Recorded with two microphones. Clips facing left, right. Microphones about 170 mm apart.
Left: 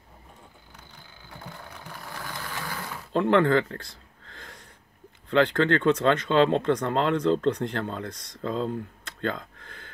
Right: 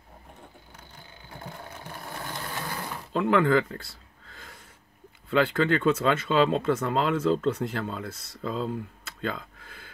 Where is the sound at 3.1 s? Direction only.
5° right (ahead or behind).